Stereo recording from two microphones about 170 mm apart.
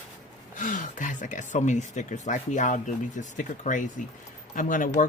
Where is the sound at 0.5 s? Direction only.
50° left (ahead or behind).